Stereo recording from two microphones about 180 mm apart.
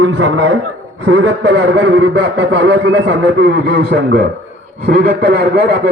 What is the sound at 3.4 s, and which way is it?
A man's voice, 55° right (ahead or behind).